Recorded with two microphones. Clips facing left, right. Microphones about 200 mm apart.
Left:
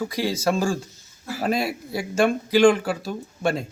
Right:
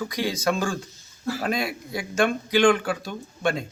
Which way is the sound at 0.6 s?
25° left (ahead or behind).